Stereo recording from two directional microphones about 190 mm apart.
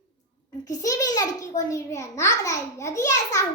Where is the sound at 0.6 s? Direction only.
20° left (ahead or behind).